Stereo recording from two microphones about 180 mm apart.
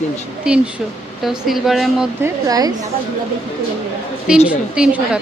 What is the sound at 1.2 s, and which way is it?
Speech, centre (ahead or behind).